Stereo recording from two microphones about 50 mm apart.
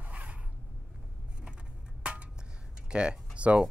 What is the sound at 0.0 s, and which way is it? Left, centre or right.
Zipper, right.